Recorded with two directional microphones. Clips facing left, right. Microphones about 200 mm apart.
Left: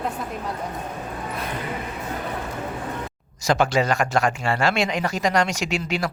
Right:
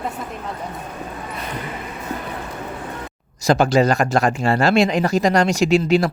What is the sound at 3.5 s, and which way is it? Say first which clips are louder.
Speech: right 5 dB; 35° right (ahead or behind).